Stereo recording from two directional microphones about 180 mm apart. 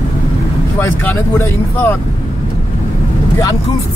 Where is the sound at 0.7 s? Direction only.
15° left (ahead or behind).